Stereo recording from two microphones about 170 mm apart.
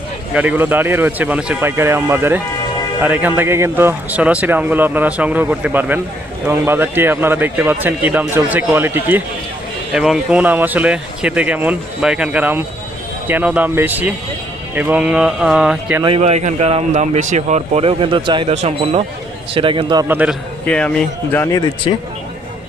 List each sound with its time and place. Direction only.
0.3 s a man's voice: 10° right (ahead or behind)
16.0 s a man's voice: 35° right (ahead or behind)
20.1 s a man's voice: 10° right (ahead or behind)
20.7 s a man's voice: 5° left (ahead or behind)